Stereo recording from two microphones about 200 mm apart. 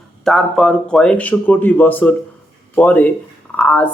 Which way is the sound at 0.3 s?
Centre (ahead or behind).